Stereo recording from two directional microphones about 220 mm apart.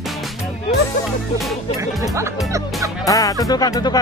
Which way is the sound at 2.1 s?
15° right (ahead or behind).